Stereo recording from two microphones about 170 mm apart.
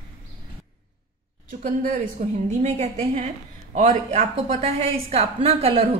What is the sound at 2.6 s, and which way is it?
A woman's voice, 40° right (ahead or behind).